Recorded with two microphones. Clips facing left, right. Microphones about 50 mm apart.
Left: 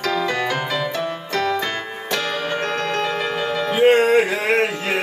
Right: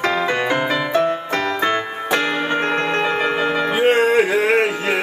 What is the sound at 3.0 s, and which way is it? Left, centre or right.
Music, right.